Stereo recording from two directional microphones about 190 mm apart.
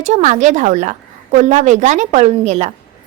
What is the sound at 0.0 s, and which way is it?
A woman's voice, 40° right (ahead or behind).